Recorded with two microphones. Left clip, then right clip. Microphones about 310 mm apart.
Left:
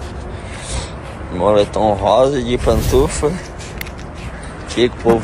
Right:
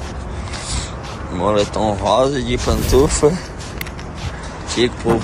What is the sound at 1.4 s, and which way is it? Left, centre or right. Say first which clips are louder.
Speech: left 4 dB; centre.